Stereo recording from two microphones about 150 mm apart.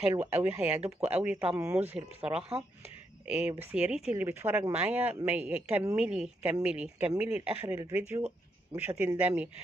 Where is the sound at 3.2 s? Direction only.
10° right (ahead or behind).